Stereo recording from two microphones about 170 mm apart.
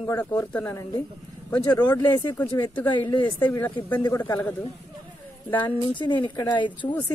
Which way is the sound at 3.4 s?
10° left (ahead or behind).